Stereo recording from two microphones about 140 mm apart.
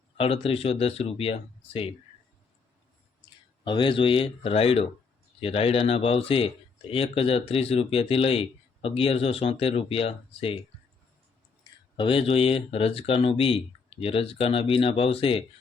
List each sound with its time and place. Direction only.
0.2 s speech: 45° left (ahead or behind)
3.6 s speech: 35° left (ahead or behind)
11.9 s speech: 40° left (ahead or behind)